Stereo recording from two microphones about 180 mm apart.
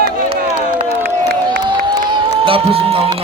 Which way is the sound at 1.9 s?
25° right (ahead or behind).